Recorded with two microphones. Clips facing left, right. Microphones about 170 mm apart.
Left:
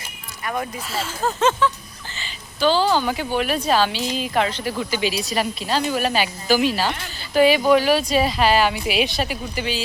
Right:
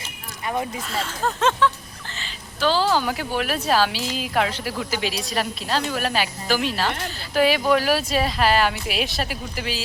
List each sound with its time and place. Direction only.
0.4 s speech: 20° right (ahead or behind)
0.9 s speech: 5° left (ahead or behind)